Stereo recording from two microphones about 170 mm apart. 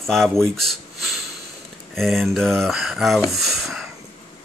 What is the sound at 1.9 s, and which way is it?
Speech, centre (ahead or behind).